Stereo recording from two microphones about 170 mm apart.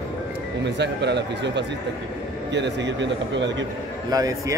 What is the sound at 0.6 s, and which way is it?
Speech, 90° right.